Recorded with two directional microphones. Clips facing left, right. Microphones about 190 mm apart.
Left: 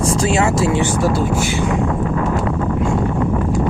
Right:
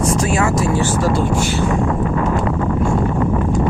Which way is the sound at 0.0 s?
30° left (ahead or behind).